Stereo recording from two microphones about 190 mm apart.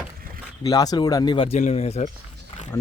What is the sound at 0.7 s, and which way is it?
Speech, 20° left (ahead or behind).